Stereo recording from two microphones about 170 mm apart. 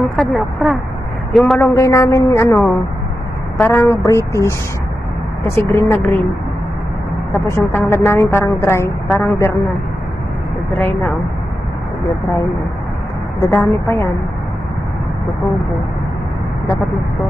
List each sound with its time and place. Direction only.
0.1 s speech: centre (ahead or behind)
1.4 s a woman's voice: 15° left (ahead or behind)
7.3 s a woman's voice: 15° left (ahead or behind)
10.7 s a woman's voice: 10° left (ahead or behind)
13.4 s a woman's voice: 15° left (ahead or behind)